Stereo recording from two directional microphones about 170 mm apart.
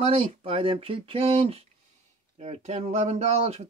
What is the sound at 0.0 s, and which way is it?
Speech, 35° right (ahead or behind).